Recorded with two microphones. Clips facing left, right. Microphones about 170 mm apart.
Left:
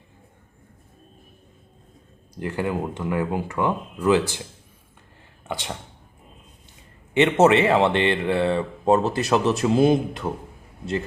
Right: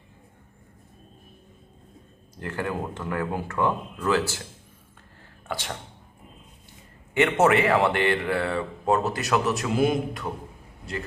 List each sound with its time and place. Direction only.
2.3 s speech: 15° left (ahead or behind)
5.5 s speech: 15° left (ahead or behind)
7.1 s a man's voice: 20° left (ahead or behind)